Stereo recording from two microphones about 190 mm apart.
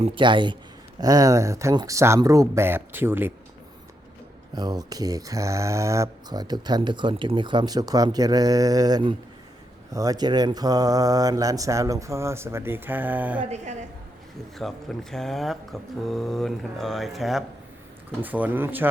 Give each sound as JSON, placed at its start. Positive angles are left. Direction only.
{"t": 0.0, "sound": "speech", "side_deg": -25}
{"t": 4.5, "sound": "speech", "side_deg": -20}
{"t": 14.5, "sound": "speech", "side_deg": 0}